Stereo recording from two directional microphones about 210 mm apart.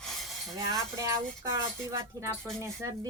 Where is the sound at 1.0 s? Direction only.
15° right (ahead or behind).